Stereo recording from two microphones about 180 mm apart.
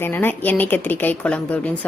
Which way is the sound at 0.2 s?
10° left (ahead or behind).